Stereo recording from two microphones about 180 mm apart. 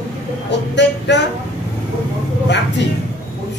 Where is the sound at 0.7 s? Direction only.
75° left (ahead or behind).